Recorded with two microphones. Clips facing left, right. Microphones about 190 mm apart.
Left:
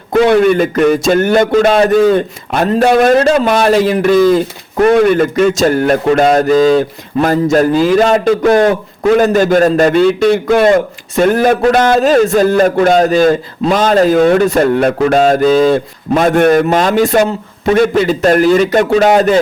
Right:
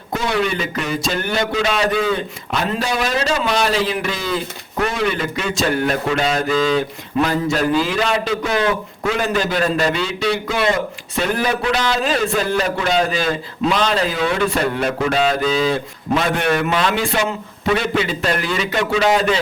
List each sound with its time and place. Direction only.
0.1 s a man's voice: 55° left (ahead or behind)